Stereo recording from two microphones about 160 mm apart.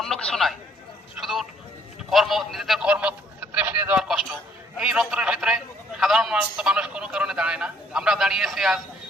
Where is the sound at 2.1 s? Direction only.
Centre (ahead or behind).